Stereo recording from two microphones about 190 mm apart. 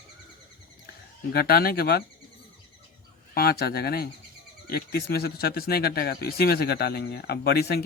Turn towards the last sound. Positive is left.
turn(degrees=55)  # may be behind; listen again after turning